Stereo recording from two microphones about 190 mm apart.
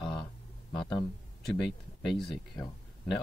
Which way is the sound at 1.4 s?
Centre (ahead or behind).